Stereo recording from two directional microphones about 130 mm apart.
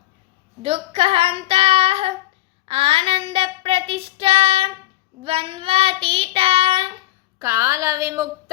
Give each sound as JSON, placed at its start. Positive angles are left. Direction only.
{"t": 0.6, "sound": "child singing", "side_deg": -50}
{"t": 7.3, "sound": "a woman's voice", "side_deg": -20}